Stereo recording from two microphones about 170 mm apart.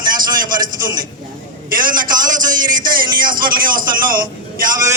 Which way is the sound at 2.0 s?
25° right (ahead or behind).